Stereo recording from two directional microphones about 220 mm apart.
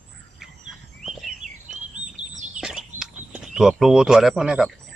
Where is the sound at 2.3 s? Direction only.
35° right (ahead or behind).